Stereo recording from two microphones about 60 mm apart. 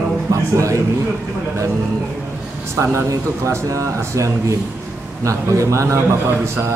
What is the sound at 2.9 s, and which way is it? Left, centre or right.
A man's voice, right.